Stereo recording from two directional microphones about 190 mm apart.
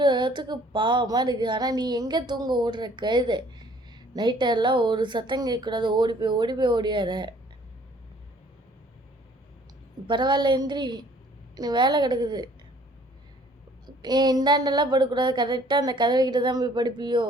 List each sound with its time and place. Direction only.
0.0 s speech: 25° right (ahead or behind)
10.1 s speech: 25° right (ahead or behind)
13.8 s speech: 20° right (ahead or behind)